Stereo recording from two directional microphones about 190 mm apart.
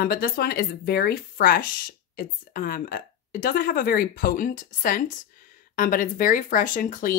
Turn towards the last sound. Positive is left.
turn(degrees=45)  # may be behind; listen again after turning